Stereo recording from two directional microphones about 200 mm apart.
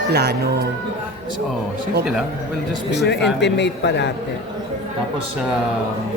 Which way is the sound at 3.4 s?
60° left (ahead or behind).